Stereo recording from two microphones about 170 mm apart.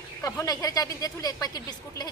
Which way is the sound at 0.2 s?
20° left (ahead or behind).